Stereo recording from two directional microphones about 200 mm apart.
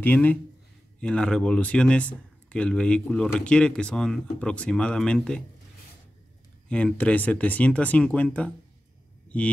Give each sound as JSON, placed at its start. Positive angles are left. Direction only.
{"t": 0.0, "sound": "speech", "side_deg": 10}
{"t": 6.7, "sound": "speech", "side_deg": 5}